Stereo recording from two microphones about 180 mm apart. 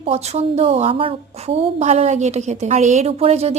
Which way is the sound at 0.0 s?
35° right (ahead or behind).